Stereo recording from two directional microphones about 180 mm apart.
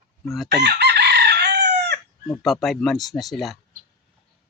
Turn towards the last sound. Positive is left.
turn(degrees=0)  # may be behind; listen again after turning